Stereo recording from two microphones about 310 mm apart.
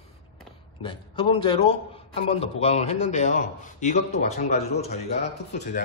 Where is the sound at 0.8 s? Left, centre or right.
Centre.